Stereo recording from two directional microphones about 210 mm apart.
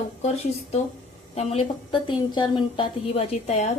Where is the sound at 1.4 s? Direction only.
30° left (ahead or behind).